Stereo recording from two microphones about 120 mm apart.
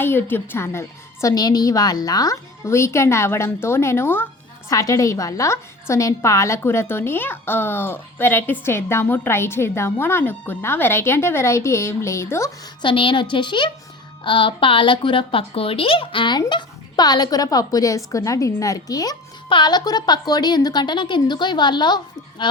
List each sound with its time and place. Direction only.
0.0 s a woman's voice: 20° left (ahead or behind)
12.8 s a woman's voice: 45° left (ahead or behind)